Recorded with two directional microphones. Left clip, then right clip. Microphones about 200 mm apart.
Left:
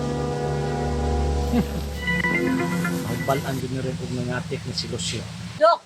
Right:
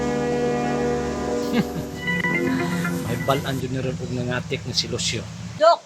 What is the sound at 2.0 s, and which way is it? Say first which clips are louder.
Music: even; centre (ahead or behind).